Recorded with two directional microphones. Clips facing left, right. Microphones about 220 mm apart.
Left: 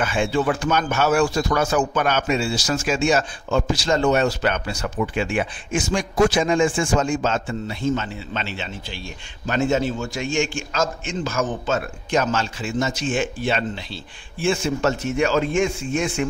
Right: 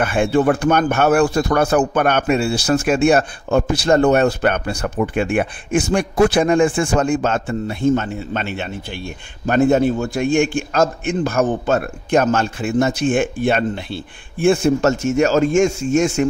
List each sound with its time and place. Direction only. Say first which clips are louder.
0.0 s speech: right 5 dB; 55° right (ahead or behind)